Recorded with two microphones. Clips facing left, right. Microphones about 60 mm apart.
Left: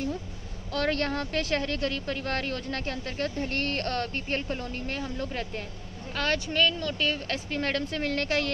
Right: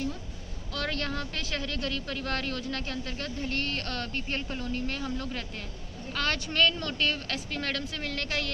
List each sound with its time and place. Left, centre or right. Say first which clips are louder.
0.7 s speech: left 5 dB; left
6.5 s speech: left 1 dB; centre
7.2 s speech: left 3 dB; left